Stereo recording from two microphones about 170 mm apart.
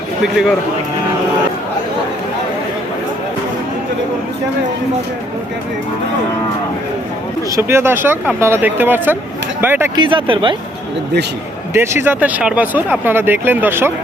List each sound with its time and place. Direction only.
7.5 s speech: 15° right (ahead or behind)
10.0 s speech: 30° right (ahead or behind)
11.7 s speech: 15° right (ahead or behind)